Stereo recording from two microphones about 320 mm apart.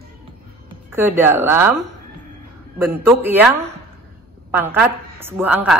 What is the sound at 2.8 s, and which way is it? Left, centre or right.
Speech, centre.